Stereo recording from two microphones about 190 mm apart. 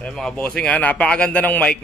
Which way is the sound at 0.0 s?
5° left (ahead or behind).